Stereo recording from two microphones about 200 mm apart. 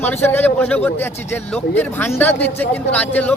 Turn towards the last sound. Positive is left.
turn(degrees=10)  # may be behind; listen again after turning